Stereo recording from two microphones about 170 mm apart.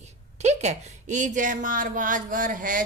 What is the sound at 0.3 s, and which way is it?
A woman's voice, 40° right (ahead or behind).